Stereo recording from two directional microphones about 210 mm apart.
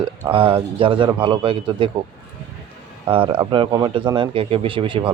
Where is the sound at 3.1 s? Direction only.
25° right (ahead or behind).